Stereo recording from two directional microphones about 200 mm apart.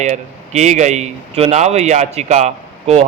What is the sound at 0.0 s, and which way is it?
A man's voice, 35° right (ahead or behind).